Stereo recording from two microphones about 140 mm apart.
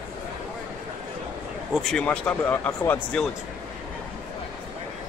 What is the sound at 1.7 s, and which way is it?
Speech, centre (ahead or behind).